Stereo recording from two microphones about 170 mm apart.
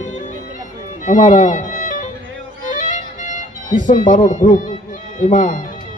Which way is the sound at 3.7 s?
50° left (ahead or behind).